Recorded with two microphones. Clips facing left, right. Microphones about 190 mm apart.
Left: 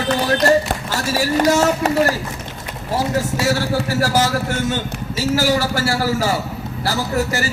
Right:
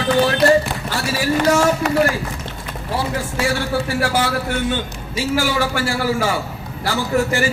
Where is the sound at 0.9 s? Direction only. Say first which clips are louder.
Even; 40° left (ahead or behind).